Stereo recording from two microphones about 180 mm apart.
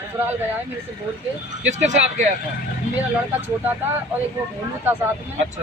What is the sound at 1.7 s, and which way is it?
Speech, 40° right (ahead or behind).